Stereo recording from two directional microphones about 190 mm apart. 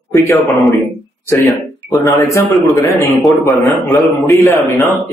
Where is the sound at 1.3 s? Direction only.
10° left (ahead or behind).